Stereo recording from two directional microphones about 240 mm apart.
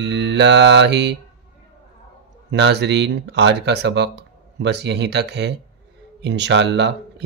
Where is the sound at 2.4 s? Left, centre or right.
Right.